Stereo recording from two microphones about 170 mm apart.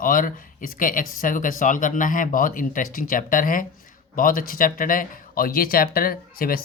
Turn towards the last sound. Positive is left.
turn(degrees=60)  # may be behind; listen again after turning